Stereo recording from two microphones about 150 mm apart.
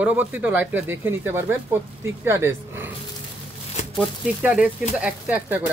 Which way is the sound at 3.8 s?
50° left (ahead or behind).